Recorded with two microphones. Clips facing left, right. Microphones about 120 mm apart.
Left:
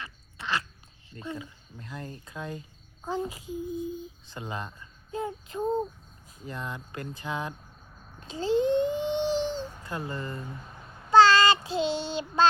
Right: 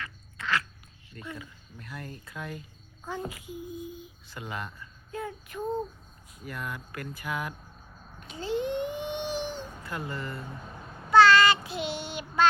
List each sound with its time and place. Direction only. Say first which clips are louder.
0.0 s a sound: right 1 dB; 20° left (ahead or behind)
1.1 s speech: left 4 dB; 25° left (ahead or behind)
3.8 s a sound: left 6 dB; 30° left (ahead or behind)
4.3 s speech: even; 25° left (ahead or behind)
8.2 s babbling: left 5 dB; 30° left (ahead or behind)
11.1 s child singing: even; 30° left (ahead or behind)